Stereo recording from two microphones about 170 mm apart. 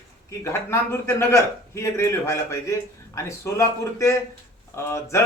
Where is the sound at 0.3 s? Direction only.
15° left (ahead or behind).